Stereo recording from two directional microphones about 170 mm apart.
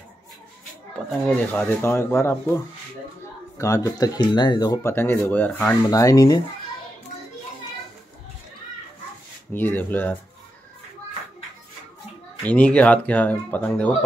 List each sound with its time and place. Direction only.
1.2 s speech: 5° left (ahead or behind)
5.9 s speech: 20° left (ahead or behind)
9.5 s speech: 10° left (ahead or behind)
12.4 s speech: 10° left (ahead or behind)